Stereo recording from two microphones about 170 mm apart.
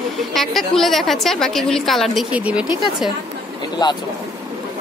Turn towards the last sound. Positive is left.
turn(degrees=25)  # may be behind; listen again after turning